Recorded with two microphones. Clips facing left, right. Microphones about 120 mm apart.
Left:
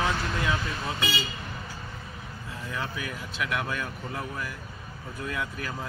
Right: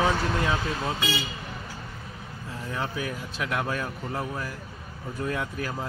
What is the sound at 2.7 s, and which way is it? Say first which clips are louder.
Speech: right 3 dB; 35° right (ahead or behind).